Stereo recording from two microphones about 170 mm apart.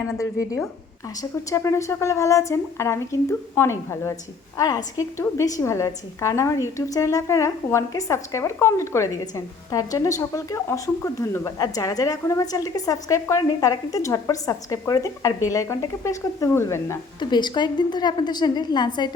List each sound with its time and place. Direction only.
0.1 s a woman's voice: 20° left (ahead or behind)